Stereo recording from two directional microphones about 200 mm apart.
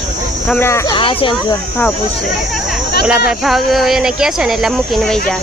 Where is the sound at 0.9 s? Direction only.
25° left (ahead or behind).